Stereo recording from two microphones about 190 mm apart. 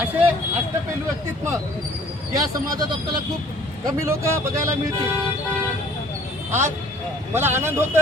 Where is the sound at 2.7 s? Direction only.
20° right (ahead or behind).